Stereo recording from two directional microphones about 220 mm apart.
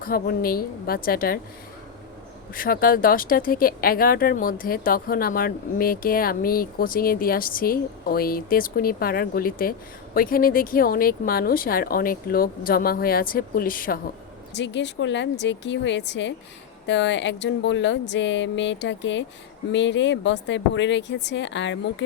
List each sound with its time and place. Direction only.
0.0 s speech: 40° left (ahead or behind)
2.6 s speech: 40° left (ahead or behind)
14.5 s speech: 55° left (ahead or behind)